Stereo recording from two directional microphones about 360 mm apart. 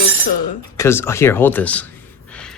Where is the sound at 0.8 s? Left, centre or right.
Centre.